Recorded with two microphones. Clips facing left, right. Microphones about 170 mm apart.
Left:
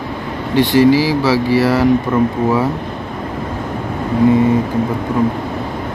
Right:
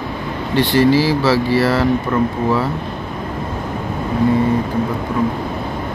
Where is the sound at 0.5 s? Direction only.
15° left (ahead or behind).